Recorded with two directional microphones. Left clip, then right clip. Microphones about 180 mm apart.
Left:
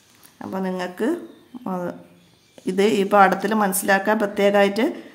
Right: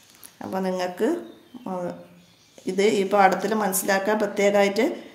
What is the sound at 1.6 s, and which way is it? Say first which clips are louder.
Speech: left 2 dB; 30° left (ahead or behind).